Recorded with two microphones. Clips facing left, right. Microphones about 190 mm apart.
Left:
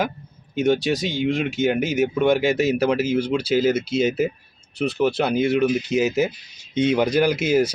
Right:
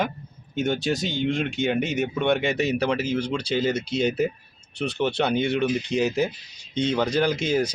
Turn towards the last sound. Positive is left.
turn(degrees=5)  # may be behind; listen again after turning